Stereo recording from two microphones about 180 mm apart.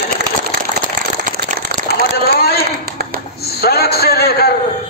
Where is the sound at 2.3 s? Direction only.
60° left (ahead or behind).